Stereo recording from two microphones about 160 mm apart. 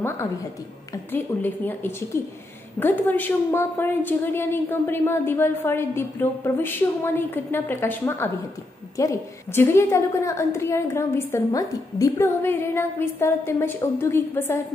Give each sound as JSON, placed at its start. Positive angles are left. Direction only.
{"t": 1.1, "sound": "a woman's voice", "side_deg": 10}